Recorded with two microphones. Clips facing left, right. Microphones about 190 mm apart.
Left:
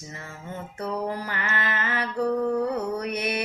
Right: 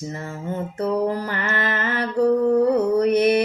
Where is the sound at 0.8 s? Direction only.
40° right (ahead or behind).